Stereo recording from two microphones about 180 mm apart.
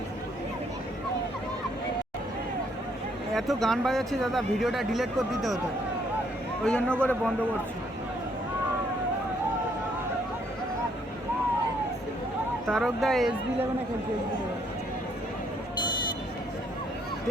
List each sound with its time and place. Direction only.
3.3 s speech: centre (ahead or behind)
6.7 s a man's voice: 5° left (ahead or behind)
12.6 s speech: centre (ahead or behind)